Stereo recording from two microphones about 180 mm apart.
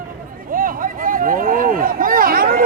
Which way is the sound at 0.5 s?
50° right (ahead or behind).